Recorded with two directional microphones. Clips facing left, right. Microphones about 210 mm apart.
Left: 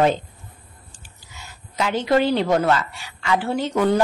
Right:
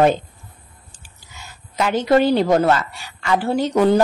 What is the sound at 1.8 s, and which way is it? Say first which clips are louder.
A woman's voice: right 3 dB; 45° right (ahead or behind).